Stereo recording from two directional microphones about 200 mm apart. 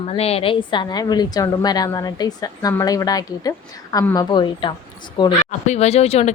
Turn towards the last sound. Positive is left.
turn(degrees=30)  # may be behind; listen again after turning